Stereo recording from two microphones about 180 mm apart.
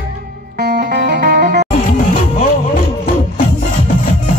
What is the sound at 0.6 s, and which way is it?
Music, 55° right (ahead or behind).